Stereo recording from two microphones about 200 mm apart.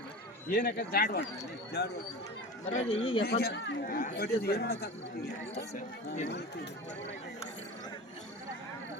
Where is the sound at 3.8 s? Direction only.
45° left (ahead or behind).